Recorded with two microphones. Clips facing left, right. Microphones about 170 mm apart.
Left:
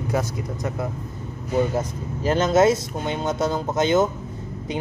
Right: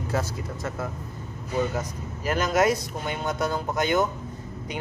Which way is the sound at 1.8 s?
30° left (ahead or behind).